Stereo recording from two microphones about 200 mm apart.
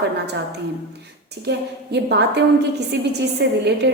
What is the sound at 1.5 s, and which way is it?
A woman's voice, 55° right (ahead or behind).